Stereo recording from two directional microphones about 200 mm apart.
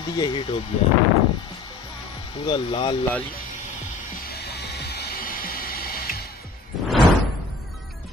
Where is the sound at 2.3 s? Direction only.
25° left (ahead or behind).